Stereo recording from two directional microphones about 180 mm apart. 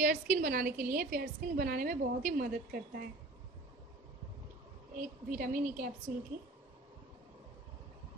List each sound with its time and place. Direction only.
0.0 s a woman's voice: 50° right (ahead or behind)
4.9 s a woman's voice: 50° right (ahead or behind)